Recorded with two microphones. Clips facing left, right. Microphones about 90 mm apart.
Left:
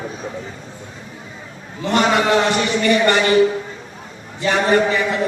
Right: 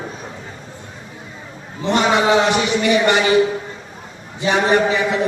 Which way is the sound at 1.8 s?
20° right (ahead or behind).